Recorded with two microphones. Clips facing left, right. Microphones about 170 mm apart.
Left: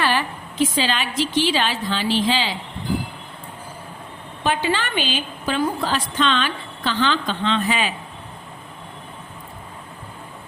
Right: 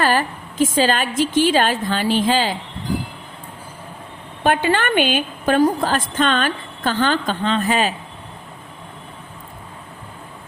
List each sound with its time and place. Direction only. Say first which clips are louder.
0.0 s a woman's voice: right 3 dB; 45° right (ahead or behind)
4.4 s a woman's voice: right 4 dB; 55° right (ahead or behind)